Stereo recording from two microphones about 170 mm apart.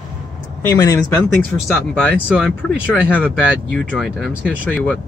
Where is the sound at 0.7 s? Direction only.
20° left (ahead or behind).